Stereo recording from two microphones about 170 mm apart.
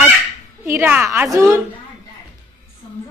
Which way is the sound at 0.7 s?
10° right (ahead or behind).